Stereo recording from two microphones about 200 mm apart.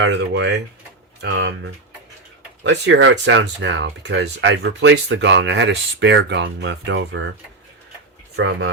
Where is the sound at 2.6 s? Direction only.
65° right (ahead or behind).